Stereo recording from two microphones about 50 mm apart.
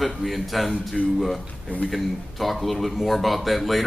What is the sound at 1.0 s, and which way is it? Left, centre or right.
Speech, right.